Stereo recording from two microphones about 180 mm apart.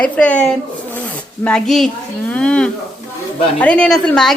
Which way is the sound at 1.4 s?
5° left (ahead or behind).